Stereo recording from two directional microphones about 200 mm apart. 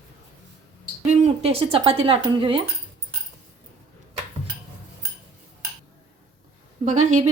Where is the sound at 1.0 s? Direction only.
35° right (ahead or behind).